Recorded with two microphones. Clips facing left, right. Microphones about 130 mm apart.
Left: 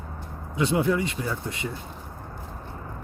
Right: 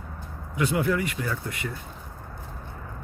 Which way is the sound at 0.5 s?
25° left (ahead or behind).